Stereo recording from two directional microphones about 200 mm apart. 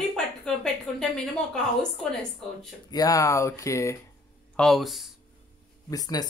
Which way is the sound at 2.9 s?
20° left (ahead or behind).